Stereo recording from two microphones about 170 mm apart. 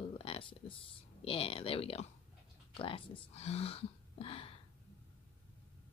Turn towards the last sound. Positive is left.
turn(degrees=35)  # may be behind; listen again after turning